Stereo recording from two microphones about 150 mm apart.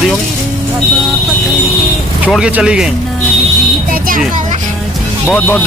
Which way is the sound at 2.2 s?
10° right (ahead or behind).